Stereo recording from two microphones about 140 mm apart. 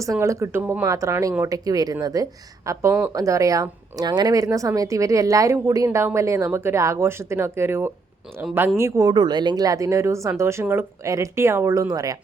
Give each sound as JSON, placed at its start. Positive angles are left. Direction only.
{"t": 0.0, "sound": "speech", "side_deg": -20}